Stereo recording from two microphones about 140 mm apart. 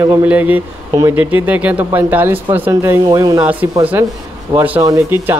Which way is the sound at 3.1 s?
30° right (ahead or behind).